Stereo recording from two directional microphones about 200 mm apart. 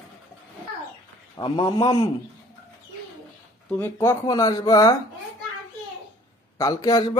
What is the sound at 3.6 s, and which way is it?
Speech, 10° left (ahead or behind).